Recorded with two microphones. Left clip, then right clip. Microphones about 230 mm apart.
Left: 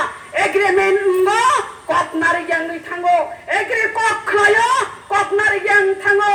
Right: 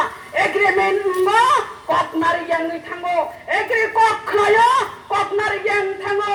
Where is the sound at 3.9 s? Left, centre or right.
Left.